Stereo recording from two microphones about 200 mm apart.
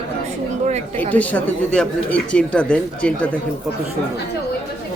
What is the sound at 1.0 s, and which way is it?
Speech, 10° left (ahead or behind).